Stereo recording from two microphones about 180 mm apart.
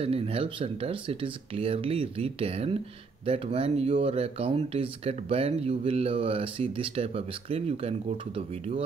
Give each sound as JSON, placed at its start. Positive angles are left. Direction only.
{"t": 0.0, "sound": "speech", "side_deg": -30}